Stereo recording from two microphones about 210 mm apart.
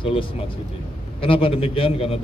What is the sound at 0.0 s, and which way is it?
A man's voice, 25° left (ahead or behind).